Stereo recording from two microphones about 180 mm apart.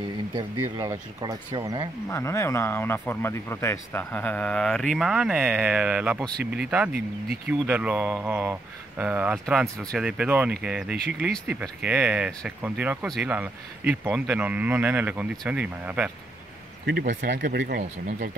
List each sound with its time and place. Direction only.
0.3 s speech: 20° right (ahead or behind)
2.0 s speech: 15° left (ahead or behind); by 16.1 s 5° right (ahead or behind)
17.4 s speech: 55° right (ahead or behind)